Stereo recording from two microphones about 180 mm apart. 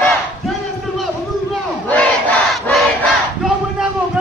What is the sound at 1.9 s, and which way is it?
Battle cry, 5° left (ahead or behind).